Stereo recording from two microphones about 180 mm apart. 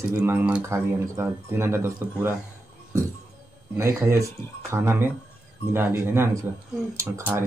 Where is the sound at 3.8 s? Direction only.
15° right (ahead or behind).